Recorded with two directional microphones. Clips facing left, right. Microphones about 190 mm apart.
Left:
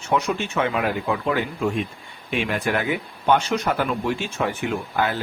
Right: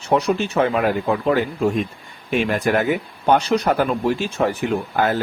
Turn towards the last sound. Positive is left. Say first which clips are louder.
# right 4 dB
turn(degrees=-40)  # may be behind; listen again after turning